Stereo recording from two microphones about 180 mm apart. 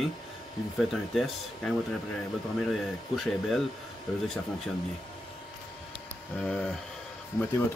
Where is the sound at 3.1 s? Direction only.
Centre (ahead or behind).